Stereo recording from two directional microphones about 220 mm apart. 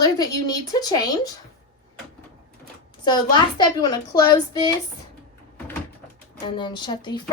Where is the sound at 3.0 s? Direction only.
20° left (ahead or behind).